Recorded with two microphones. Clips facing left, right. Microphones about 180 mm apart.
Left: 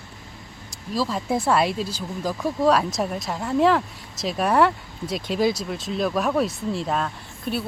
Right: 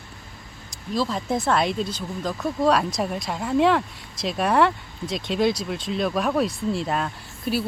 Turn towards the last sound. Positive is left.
turn(degrees=-5)  # may be behind; listen again after turning